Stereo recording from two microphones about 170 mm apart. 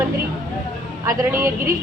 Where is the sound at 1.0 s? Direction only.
20° right (ahead or behind).